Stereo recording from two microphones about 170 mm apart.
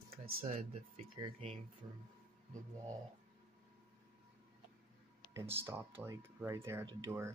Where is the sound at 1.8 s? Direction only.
20° right (ahead or behind).